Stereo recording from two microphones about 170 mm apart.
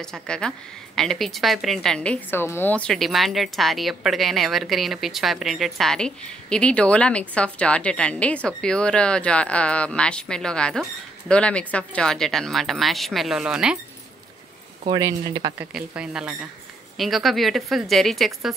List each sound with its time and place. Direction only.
0.0 s a woman's voice: 5° left (ahead or behind)
14.9 s speech: 20° right (ahead or behind)
15.6 s a woman's voice: 5° right (ahead or behind)